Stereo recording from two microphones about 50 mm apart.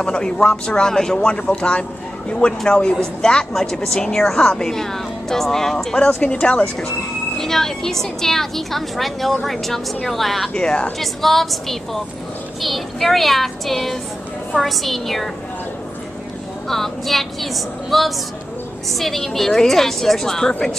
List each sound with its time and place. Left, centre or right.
0.0 s speech: centre
5.9 s speech: left
7.3 s a woman's voice: centre
10.5 s speech: centre
11.0 s a woman's voice: centre
16.6 s a woman's voice: centre